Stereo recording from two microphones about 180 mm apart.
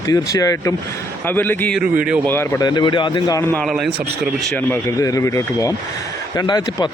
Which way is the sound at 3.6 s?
Centre (ahead or behind).